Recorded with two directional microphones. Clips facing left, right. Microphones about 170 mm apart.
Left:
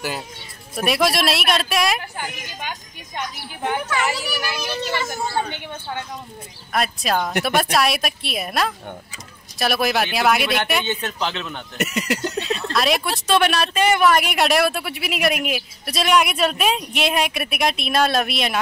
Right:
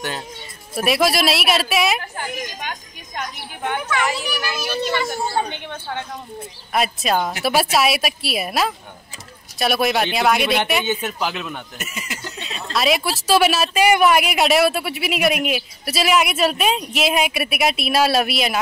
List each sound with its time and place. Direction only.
0.7 s speech: centre (ahead or behind)
6.7 s a man's voice: 5° right (ahead or behind)
11.8 s speech: 70° left (ahead or behind)
12.5 s speech: centre (ahead or behind)